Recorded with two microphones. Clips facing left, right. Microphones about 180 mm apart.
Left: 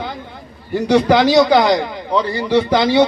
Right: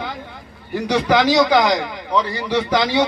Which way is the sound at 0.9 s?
25° left (ahead or behind).